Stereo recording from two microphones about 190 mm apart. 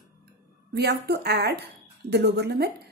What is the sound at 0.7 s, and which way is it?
A woman's voice, 55° right (ahead or behind).